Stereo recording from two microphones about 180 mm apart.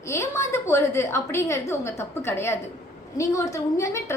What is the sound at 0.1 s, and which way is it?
A woman's voice, 15° left (ahead or behind).